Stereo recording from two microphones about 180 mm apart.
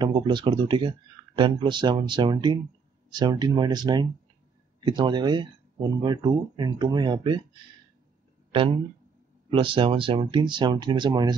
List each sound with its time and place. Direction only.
0.0 s speech: 25° right (ahead or behind)
8.5 s speech: 30° right (ahead or behind)